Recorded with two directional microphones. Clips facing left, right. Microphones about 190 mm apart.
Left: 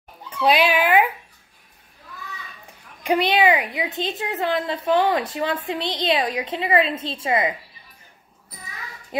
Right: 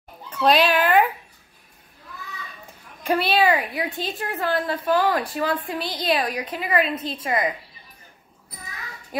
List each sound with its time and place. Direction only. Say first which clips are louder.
0.3 s speech: even; 10° left (ahead or behind)
3.0 s a woman's voice: left 1 dB; 15° left (ahead or behind)
9.1 s a woman's voice: left 3 dB; 25° left (ahead or behind)